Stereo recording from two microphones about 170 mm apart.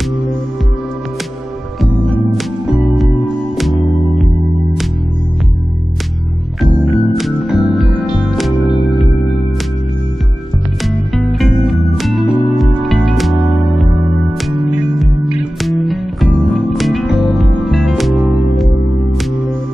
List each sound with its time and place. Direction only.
2.2 s music: centre (ahead or behind)
6.8 s music: 5° left (ahead or behind)
11.1 s music: centre (ahead or behind)
14.9 s music: centre (ahead or behind)